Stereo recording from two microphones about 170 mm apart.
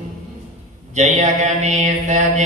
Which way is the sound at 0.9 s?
40° right (ahead or behind).